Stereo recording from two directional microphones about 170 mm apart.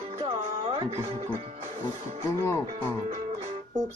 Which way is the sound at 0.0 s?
35° right (ahead or behind).